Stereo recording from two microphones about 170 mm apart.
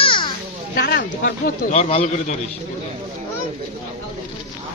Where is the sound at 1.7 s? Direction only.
40° left (ahead or behind).